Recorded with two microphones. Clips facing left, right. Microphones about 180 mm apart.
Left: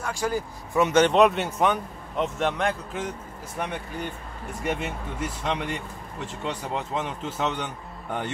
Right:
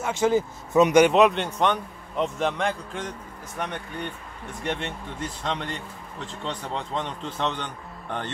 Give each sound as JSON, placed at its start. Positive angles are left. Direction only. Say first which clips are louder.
{"t": 0.0, "sound": "speech", "louder": "right 6 dB", "side_deg": -20}
{"t": 1.1, "sound": "a man's voice", "louder": "even", "side_deg": 0}